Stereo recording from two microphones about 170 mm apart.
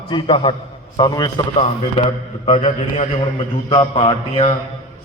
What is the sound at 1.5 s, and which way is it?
A man's voice, 40° left (ahead or behind).